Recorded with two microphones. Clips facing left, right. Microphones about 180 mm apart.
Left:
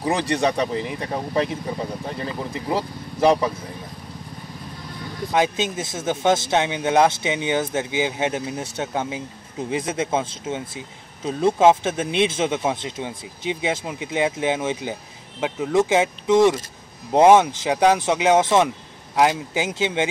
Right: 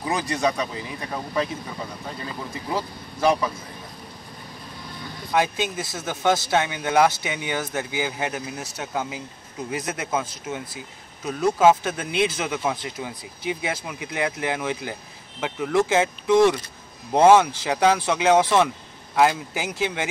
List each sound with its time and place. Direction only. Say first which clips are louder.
0.0 s speech: left 3 dB; 30° left (ahead or behind)
2.7 s speech: left 3 dB; 30° left (ahead or behind)
5.3 s speech: left 2 dB; 20° left (ahead or behind)